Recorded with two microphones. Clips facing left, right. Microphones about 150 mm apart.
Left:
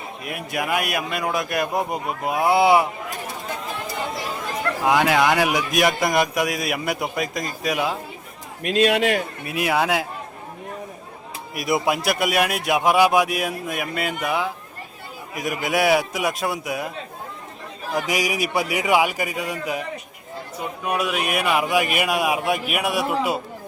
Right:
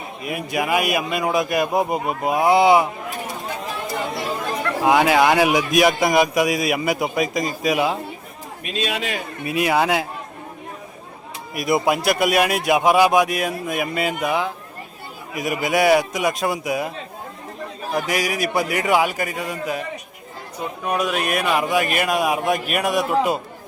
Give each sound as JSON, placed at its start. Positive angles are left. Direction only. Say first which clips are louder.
{"t": 0.3, "sound": "speech", "louder": "right 3 dB", "side_deg": 0}
{"t": 4.9, "sound": "speech", "louder": "right 3 dB", "side_deg": -5}
{"t": 8.6, "sound": "a man's voice", "louder": "left 7 dB", "side_deg": 75}
{"t": 9.5, "sound": "speech", "louder": "right 3 dB", "side_deg": 0}
{"t": 11.5, "sound": "speech", "louder": "right 2 dB", "side_deg": 0}
{"t": 17.9, "sound": "speech", "louder": "right 1 dB", "side_deg": 15}
{"t": 20.8, "sound": "speech", "louder": "right 2 dB", "side_deg": 10}